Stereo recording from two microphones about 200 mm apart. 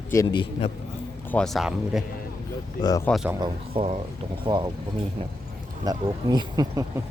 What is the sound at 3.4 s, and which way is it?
Speech, 30° right (ahead or behind).